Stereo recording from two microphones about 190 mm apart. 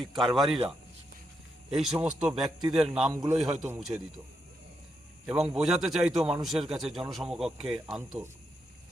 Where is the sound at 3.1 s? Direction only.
20° right (ahead or behind).